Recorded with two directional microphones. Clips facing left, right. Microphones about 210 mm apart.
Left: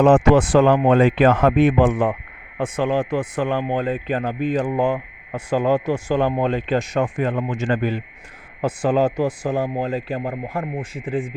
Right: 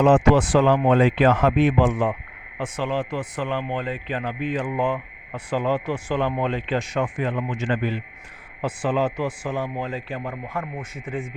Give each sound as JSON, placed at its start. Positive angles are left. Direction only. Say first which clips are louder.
{"t": 0.0, "sound": "speech", "louder": "left 3 dB", "side_deg": 55}